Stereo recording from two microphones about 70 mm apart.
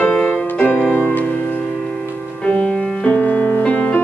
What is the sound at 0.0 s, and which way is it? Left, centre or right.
Music, centre.